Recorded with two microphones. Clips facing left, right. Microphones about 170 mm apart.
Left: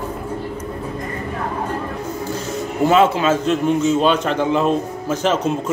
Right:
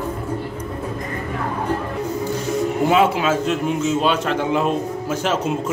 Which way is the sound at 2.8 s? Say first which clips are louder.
Left 4 dB; 10° right (ahead or behind).